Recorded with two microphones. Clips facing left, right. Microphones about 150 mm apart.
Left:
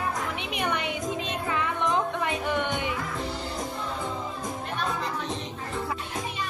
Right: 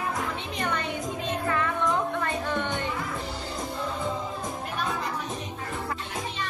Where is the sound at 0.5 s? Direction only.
15° left (ahead or behind).